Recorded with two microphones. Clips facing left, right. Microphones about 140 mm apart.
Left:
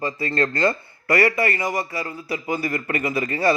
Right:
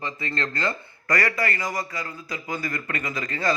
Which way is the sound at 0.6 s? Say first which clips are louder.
Left 7 dB; 25° left (ahead or behind).